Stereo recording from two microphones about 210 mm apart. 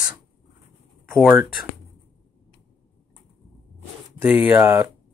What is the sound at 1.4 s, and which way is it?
Speech, 45° left (ahead or behind).